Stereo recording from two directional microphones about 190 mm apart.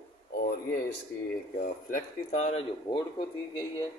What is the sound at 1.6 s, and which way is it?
Speech, 45° left (ahead or behind).